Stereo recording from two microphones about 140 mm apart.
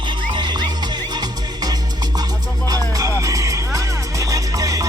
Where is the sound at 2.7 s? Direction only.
25° right (ahead or behind).